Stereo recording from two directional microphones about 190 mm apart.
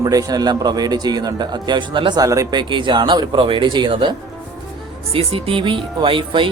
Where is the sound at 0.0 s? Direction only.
20° right (ahead or behind).